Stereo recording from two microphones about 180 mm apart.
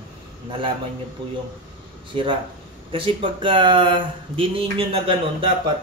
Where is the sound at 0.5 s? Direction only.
30° right (ahead or behind).